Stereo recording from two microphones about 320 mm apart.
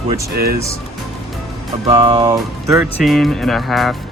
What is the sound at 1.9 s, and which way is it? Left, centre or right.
Speech, centre.